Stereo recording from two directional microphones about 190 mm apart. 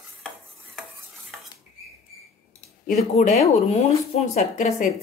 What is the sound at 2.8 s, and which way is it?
A woman's voice, 35° left (ahead or behind).